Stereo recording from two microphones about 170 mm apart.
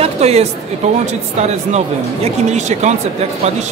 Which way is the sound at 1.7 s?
40° right (ahead or behind).